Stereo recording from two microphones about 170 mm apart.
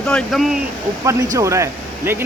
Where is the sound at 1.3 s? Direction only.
20° right (ahead or behind).